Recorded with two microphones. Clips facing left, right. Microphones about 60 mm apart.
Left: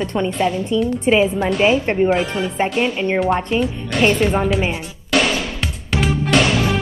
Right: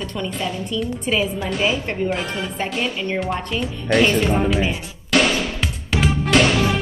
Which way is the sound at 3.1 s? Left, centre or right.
Centre.